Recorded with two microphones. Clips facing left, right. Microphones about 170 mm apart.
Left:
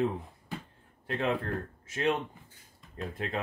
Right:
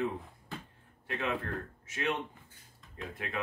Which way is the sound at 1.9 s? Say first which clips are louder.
Left 5 dB; 30° left (ahead or behind).